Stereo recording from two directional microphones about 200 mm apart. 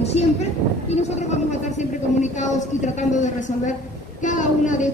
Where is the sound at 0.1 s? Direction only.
35° left (ahead or behind).